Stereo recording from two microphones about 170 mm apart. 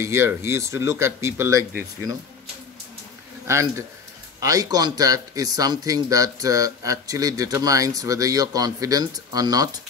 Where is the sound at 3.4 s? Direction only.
15° right (ahead or behind).